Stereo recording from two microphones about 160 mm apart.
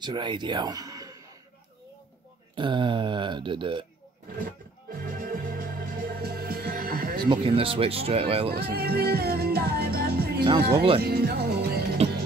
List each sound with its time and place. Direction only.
0.0 s speech: 30° right (ahead or behind)
2.5 s speech: 30° right (ahead or behind)
5.0 s music: 65° right (ahead or behind)
7.2 s speech: 35° right (ahead or behind)
8.5 s music: 75° right (ahead or behind)
12.0 s music: 40° right (ahead or behind)